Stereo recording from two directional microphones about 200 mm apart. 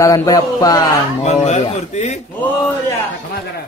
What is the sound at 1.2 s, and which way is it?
Speech, 35° left (ahead or behind).